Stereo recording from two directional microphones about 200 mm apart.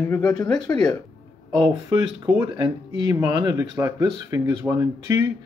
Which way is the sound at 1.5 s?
20° right (ahead or behind).